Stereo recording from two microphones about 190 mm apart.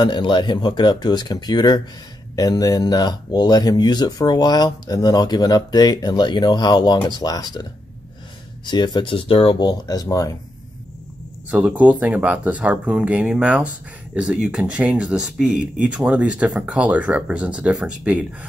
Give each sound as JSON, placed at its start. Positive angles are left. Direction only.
{"t": 0.0, "sound": "speech", "side_deg": 25}
{"t": 8.6, "sound": "speech", "side_deg": 25}
{"t": 11.5, "sound": "speech", "side_deg": -5}